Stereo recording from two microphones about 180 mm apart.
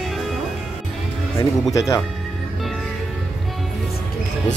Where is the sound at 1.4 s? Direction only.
20° left (ahead or behind).